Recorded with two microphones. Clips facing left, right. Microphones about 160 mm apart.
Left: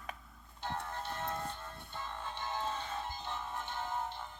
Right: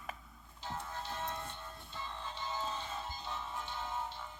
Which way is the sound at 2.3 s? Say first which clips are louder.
Left 2 dB; 55° left (ahead or behind).